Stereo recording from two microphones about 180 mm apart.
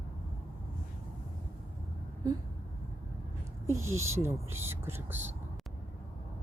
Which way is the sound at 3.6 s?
15° right (ahead or behind).